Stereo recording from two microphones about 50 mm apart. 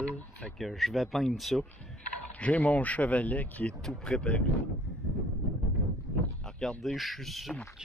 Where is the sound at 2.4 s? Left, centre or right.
Left.